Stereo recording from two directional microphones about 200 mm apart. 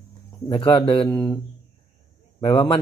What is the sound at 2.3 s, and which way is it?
Speech, 20° left (ahead or behind).